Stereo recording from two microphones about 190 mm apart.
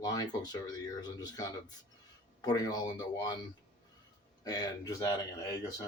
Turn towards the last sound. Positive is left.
turn(degrees=15)  # may be behind; listen again after turning